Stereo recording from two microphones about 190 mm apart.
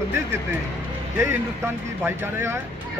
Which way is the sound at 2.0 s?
15° right (ahead or behind).